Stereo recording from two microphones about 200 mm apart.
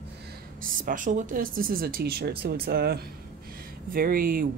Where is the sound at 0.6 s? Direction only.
45° right (ahead or behind).